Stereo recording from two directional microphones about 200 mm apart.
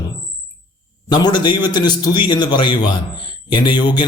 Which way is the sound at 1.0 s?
20° left (ahead or behind).